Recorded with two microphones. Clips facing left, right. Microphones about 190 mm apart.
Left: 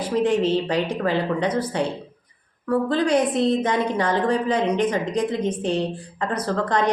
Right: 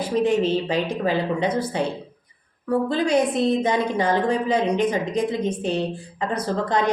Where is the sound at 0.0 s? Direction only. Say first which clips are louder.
Even; 10° right (ahead or behind).